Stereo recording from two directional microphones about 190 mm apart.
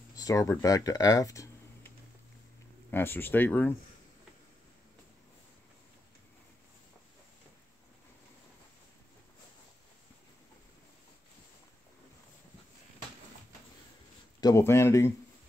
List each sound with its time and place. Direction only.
0.1 s speech: 20° left (ahead or behind)
2.9 s speech: 10° left (ahead or behind)
14.4 s speech: 15° left (ahead or behind)